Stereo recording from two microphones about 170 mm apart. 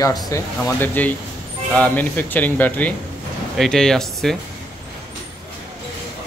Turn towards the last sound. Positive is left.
turn(degrees=5)  # may be behind; listen again after turning